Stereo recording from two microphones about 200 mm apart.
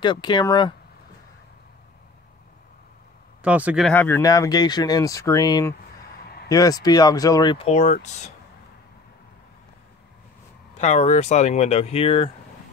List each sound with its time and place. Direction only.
0.0 s speech: 20° left (ahead or behind)
3.4 s speech: 5° right (ahead or behind)
3.9 s speech: 10° left (ahead or behind); by 8.3 s 35° left (ahead or behind)
10.8 s speech: 35° left (ahead or behind)